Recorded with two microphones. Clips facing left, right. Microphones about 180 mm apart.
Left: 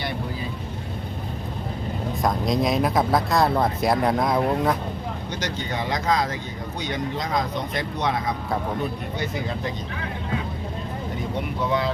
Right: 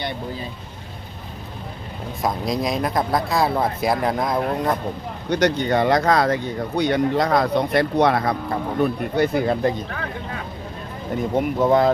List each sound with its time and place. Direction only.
2.2 s speech: centre (ahead or behind)
5.3 s speech: 60° right (ahead or behind)
11.3 s speech: 45° right (ahead or behind)